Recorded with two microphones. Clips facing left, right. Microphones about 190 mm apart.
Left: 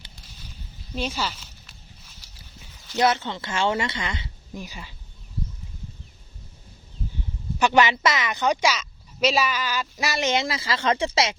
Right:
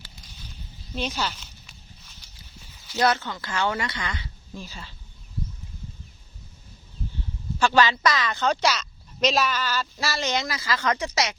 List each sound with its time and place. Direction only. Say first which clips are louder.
0.3 s a sound: even; centre (ahead or behind)
3.0 s speech: left 1 dB; 25° left (ahead or behind)
7.6 s speech: left 1 dB; 20° left (ahead or behind)